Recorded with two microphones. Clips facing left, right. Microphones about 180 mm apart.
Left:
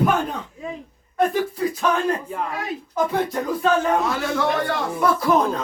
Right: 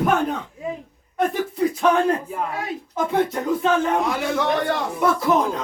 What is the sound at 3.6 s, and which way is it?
Speech, 15° right (ahead or behind).